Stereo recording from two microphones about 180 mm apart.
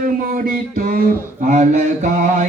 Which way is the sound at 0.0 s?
50° right (ahead or behind).